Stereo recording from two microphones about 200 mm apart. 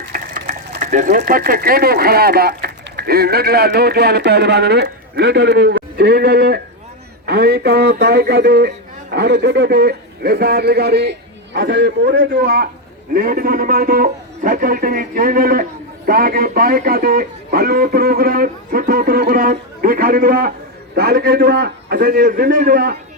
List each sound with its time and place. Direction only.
0.1 s a man's voice: 45° right (ahead or behind)